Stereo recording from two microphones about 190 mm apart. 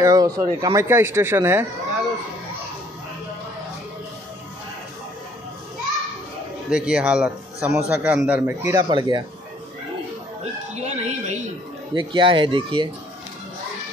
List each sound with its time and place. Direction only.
0.0 s speech: 20° right (ahead or behind)
6.7 s a man's voice: 5° right (ahead or behind); by 9.2 s 25° right (ahead or behind)
10.4 s music: 35° right (ahead or behind)
11.9 s speech: 25° right (ahead or behind)